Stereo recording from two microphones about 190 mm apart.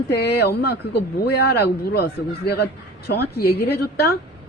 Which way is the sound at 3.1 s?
55° left (ahead or behind).